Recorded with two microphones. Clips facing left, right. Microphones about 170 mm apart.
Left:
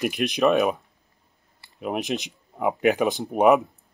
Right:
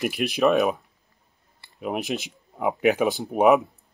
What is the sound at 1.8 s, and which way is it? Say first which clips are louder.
Speech: left 1 dB; centre (ahead or behind).